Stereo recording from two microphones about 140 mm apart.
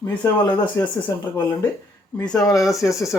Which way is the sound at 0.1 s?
10° left (ahead or behind).